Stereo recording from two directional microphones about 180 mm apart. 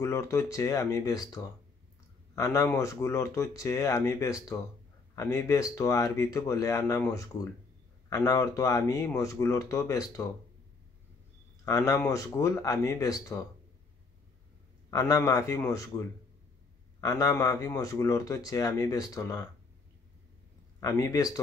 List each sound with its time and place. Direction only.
0.0 s speech: 15° left (ahead or behind)
11.6 s speech: 20° left (ahead or behind)
14.9 s speech: 20° left (ahead or behind)
17.0 s speech: 20° left (ahead or behind)
20.8 s speech: 20° left (ahead or behind)